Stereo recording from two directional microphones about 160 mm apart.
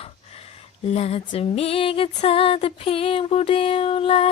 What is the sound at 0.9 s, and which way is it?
Female singing, 40° left (ahead or behind).